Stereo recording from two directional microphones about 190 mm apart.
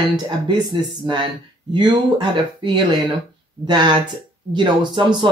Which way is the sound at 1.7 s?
25° right (ahead or behind).